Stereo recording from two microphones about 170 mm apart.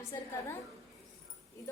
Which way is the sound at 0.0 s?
15° left (ahead or behind).